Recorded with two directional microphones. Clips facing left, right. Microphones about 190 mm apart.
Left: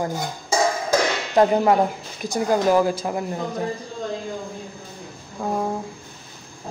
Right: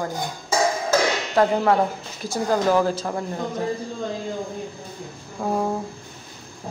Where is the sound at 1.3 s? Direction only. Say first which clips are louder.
Left 3 dB; 15° left (ahead or behind).